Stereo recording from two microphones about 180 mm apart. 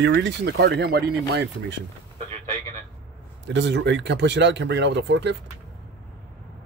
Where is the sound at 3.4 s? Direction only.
85° right.